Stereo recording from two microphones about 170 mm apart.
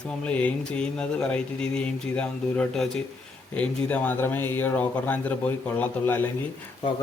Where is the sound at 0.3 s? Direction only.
10° left (ahead or behind).